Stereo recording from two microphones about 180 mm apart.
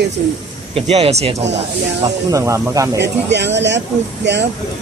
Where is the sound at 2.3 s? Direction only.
15° right (ahead or behind).